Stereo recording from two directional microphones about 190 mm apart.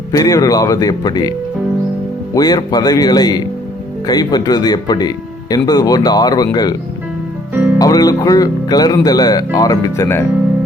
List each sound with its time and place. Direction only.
0.1 s speech: 20° left (ahead or behind)
2.3 s speech: 20° left (ahead or behind)
7.5 s music: 10° right (ahead or behind)
7.8 s speech: 20° left (ahead or behind)